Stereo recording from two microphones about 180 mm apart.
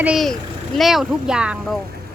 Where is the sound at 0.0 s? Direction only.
Centre (ahead or behind).